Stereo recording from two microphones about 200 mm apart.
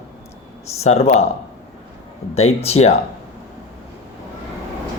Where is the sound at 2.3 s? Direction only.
30° left (ahead or behind).